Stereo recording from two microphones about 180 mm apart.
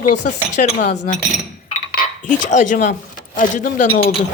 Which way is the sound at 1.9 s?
45° left (ahead or behind).